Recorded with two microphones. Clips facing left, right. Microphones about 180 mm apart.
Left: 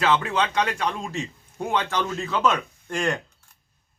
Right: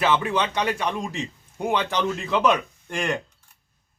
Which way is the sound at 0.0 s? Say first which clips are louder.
Even; 15° right (ahead or behind).